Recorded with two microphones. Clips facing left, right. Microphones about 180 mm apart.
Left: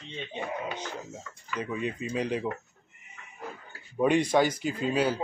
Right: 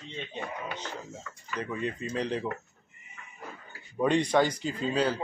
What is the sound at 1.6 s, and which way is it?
Speech, 15° left (ahead or behind).